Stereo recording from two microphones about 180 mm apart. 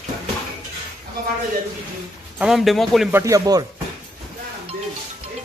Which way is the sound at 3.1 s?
15° right (ahead or behind).